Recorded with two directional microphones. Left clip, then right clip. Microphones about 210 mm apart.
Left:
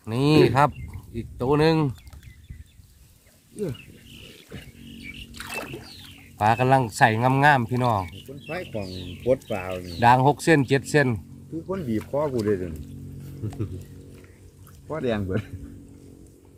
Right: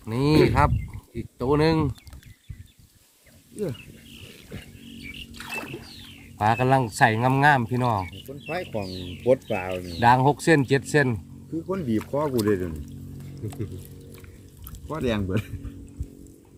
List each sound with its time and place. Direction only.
0.1 s a sound: 10° left (ahead or behind)
1.1 s speech: 5° left (ahead or behind)
4.5 s wild animals: 20° right (ahead or behind)
5.3 s a sound: 30° left (ahead or behind)
6.4 s speech: 5° left (ahead or behind)
8.5 s speech: 35° right (ahead or behind)
10.0 s speech: 5° left (ahead or behind)
11.7 s speech: 40° right (ahead or behind)
14.8 s speech: 55° right (ahead or behind)